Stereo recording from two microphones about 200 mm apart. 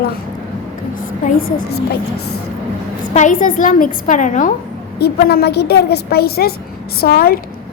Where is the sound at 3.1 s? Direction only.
40° left (ahead or behind).